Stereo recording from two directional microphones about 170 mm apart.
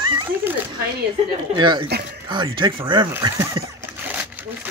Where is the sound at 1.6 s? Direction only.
25° right (ahead or behind).